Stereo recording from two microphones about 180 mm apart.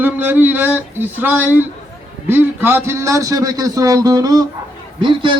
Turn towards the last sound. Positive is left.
turn(degrees=-30)  # may be behind; listen again after turning